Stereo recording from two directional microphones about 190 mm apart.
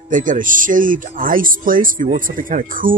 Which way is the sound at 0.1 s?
45° right (ahead or behind).